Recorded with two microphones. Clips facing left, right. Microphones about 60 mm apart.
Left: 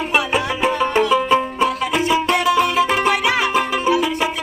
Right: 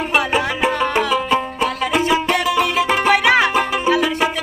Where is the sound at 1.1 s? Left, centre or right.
Centre.